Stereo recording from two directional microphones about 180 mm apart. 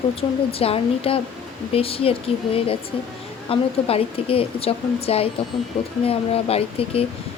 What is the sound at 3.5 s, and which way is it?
A woman's voice, 30° left (ahead or behind).